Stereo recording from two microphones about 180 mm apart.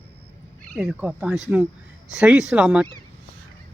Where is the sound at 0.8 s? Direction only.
10° right (ahead or behind).